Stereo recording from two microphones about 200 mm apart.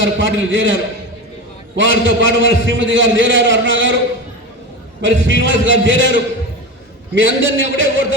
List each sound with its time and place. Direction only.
0.0 s a man's voice: 65° right (ahead or behind)
5.0 s a man's voice: 70° right (ahead or behind)
7.2 s a man's voice: 70° right (ahead or behind)